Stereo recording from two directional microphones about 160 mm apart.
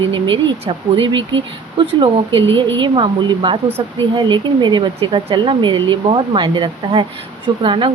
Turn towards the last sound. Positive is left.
turn(degrees=-30)  # may be behind; listen again after turning